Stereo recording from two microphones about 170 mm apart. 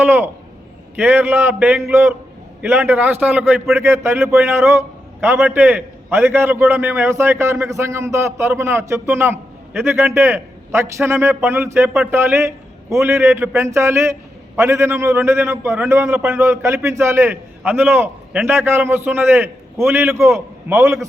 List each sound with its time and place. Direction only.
0.0 s a man's voice: 10° right (ahead or behind)